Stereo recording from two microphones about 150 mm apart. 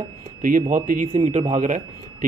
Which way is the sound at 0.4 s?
70° right (ahead or behind).